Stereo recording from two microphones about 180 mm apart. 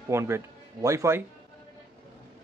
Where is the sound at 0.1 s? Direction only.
15° right (ahead or behind).